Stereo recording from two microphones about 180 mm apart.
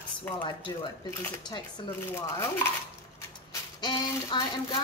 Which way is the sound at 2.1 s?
15° left (ahead or behind).